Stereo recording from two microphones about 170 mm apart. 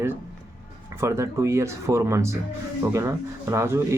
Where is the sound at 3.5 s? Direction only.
15° right (ahead or behind).